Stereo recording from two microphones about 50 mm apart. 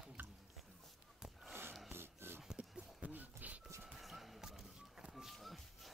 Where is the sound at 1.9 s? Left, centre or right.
Right.